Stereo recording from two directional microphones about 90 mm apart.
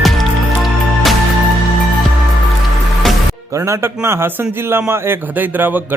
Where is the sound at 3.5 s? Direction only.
35° right (ahead or behind).